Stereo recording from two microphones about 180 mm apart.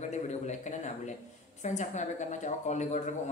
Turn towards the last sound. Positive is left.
turn(degrees=40)  # may be behind; listen again after turning